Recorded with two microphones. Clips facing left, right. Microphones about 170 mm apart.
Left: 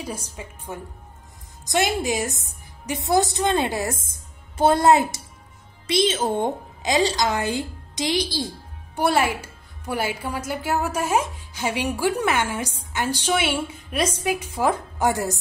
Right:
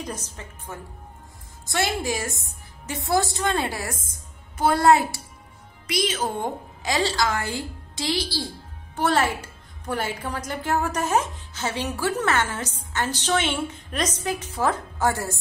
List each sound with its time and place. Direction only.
0.0 s a woman's voice: 10° left (ahead or behind)